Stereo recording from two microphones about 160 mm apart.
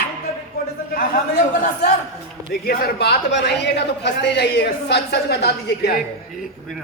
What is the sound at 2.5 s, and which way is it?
A woman's voice, 70° left (ahead or behind).